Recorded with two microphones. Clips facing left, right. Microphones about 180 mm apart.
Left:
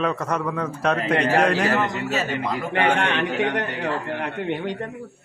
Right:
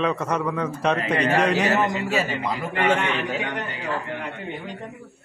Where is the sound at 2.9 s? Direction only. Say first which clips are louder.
Left 3 dB; 70° left (ahead or behind).